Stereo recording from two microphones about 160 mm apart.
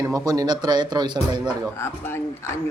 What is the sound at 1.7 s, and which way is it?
Speech, 15° left (ahead or behind).